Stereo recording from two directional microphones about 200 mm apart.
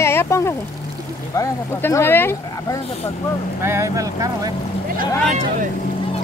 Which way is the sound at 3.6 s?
15° right (ahead or behind).